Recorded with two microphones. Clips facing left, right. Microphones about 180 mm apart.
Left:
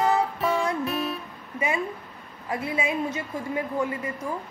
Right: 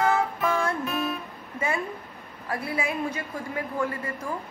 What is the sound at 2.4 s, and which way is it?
A woman's voice, 20° left (ahead or behind).